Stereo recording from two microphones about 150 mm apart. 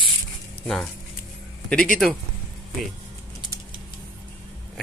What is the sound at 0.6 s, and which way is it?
Speech, 5° left (ahead or behind).